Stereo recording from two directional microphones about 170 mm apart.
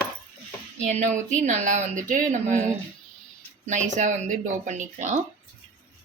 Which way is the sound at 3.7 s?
45° right (ahead or behind).